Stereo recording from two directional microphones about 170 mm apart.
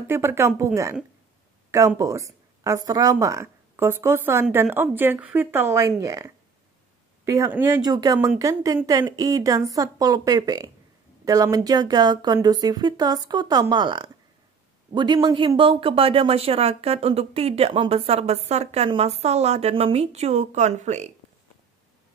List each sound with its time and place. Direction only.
0.0 s speech: 15° right (ahead or behind)
2.0 s speech: 20° right (ahead or behind); by 21.1 s 45° right (ahead or behind)